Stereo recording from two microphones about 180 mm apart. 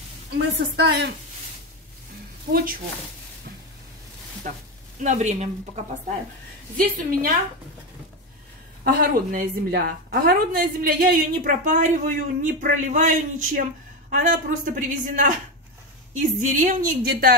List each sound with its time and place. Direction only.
0.7 s a woman's voice: 65° right (ahead or behind)
2.5 s a woman's voice: 55° right (ahead or behind)
4.4 s a woman's voice: 50° right (ahead or behind)
6.8 s a woman's voice: 50° right (ahead or behind)
8.8 s a woman's voice: 55° right (ahead or behind)